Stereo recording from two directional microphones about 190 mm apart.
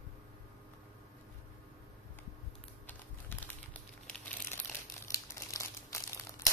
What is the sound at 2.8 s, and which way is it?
Typing, 10° left (ahead or behind).